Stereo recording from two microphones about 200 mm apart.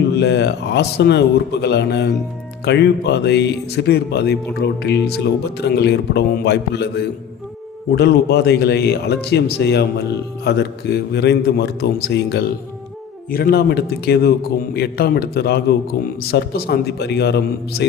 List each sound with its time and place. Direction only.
0.2 s a man's voice: 60° left (ahead or behind)